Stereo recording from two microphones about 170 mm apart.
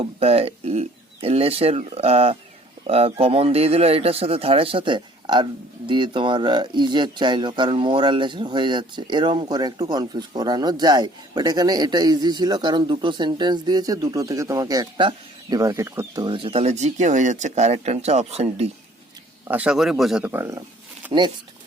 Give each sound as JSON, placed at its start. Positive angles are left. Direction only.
{"t": 0.0, "sound": "speech", "side_deg": -35}
{"t": 19.5, "sound": "a man's voice", "side_deg": -5}
{"t": 20.2, "sound": "speech", "side_deg": -15}
{"t": 21.1, "sound": "speech", "side_deg": -30}